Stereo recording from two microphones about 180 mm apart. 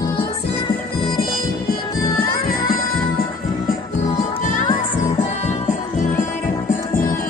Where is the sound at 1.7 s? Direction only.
55° left (ahead or behind).